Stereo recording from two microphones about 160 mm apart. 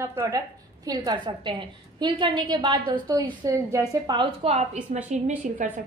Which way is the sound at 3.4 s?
20° right (ahead or behind).